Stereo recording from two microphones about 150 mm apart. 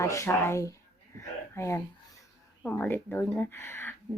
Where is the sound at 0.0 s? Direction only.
20° left (ahead or behind).